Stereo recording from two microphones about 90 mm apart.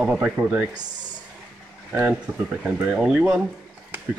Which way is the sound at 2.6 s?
10° right (ahead or behind).